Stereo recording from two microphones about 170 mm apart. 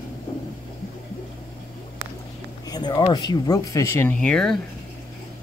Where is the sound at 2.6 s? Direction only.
25° left (ahead or behind); by 4.6 s 5° left (ahead or behind).